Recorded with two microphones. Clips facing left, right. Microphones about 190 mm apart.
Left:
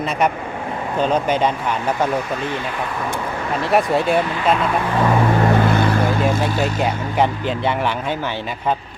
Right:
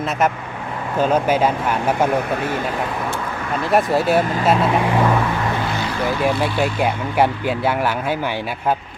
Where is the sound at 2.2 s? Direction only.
60° right (ahead or behind).